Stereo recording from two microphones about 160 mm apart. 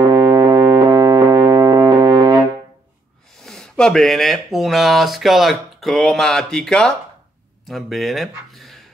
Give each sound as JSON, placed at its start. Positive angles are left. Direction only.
{"t": 0.0, "sound": "music", "side_deg": -30}
{"t": 3.4, "sound": "speech", "side_deg": 5}